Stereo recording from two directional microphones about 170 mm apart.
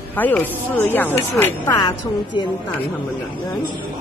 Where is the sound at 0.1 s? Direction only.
10° left (ahead or behind).